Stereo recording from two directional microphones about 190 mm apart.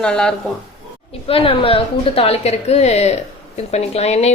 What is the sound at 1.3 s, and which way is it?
A woman's voice, 30° left (ahead or behind).